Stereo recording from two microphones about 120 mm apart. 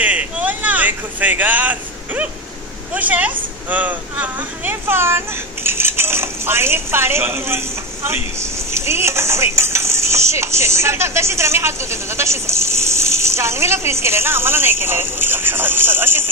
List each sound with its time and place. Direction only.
0.0 s vehicle: 10° right (ahead or behind)
2.9 s speech: 15° right (ahead or behind)